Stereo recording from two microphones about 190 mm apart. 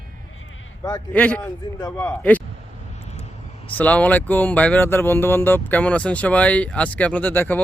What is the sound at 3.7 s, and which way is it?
Speech, 5° left (ahead or behind).